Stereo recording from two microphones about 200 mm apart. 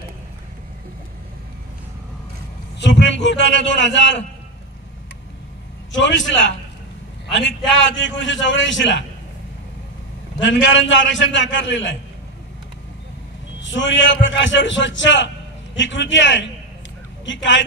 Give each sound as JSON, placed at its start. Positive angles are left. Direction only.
{"t": 2.8, "sound": "a man's voice", "side_deg": 60}
{"t": 5.9, "sound": "a man's voice", "side_deg": 65}
{"t": 10.4, "sound": "a man's voice", "side_deg": 70}
{"t": 13.6, "sound": "a man's voice", "side_deg": 65}